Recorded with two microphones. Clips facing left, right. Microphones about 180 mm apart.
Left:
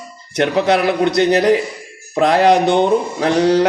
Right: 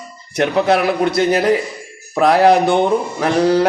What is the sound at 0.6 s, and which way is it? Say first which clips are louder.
A man's voice: even; 20° left (ahead or behind).